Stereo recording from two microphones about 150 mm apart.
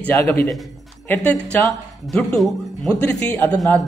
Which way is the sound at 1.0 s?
15° left (ahead or behind).